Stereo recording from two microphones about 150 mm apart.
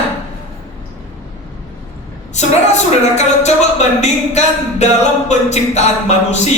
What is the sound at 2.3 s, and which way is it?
A woman's voice, 50° left (ahead or behind).